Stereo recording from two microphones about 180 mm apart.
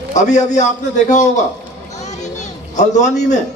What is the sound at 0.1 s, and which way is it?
A man's voice, 40° left (ahead or behind).